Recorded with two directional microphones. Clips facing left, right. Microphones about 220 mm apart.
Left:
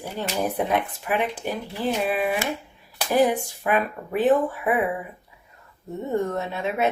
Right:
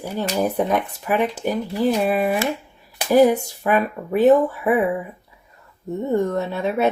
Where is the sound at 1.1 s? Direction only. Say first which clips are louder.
Right 5 dB; 40° right (ahead or behind).